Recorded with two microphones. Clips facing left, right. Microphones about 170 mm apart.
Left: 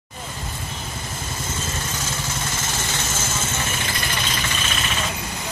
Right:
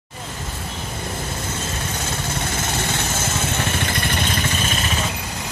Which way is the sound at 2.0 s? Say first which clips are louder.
Right 3 dB; 60° right (ahead or behind).